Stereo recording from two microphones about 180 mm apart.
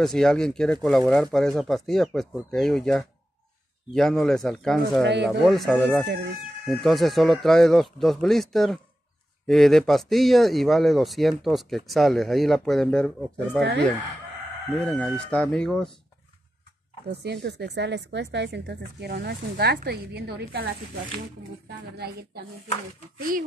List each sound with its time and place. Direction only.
0.0 s a man's voice: 5° left (ahead or behind)
5.0 s a woman's voice: 70° right (ahead or behind)
5.4 s a man's voice: centre (ahead or behind)
13.6 s a woman's voice: 70° right (ahead or behind)
14.7 s a man's voice: 5° left (ahead or behind)
17.1 s a woman's voice: 65° right (ahead or behind)
21.6 s a woman's voice: 65° right (ahead or behind)